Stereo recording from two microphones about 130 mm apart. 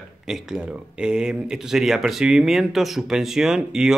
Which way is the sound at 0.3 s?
5° right (ahead or behind).